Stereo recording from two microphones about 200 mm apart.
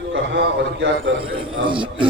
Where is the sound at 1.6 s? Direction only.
25° right (ahead or behind).